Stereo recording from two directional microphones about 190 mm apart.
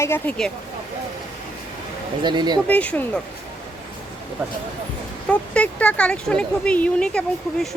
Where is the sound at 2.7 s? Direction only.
5° left (ahead or behind).